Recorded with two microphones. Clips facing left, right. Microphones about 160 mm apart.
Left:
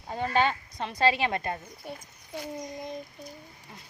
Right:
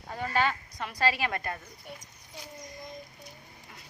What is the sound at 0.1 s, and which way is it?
Speech, 25° left (ahead or behind).